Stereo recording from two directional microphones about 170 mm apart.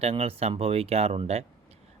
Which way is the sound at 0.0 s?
35° right (ahead or behind).